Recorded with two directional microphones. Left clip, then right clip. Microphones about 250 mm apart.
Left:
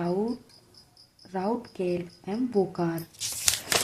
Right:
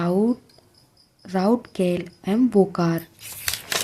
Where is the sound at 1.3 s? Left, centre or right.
Right.